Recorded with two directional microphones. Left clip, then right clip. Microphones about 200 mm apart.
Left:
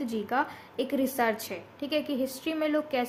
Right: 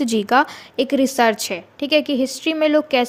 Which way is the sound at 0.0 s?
45° right (ahead or behind).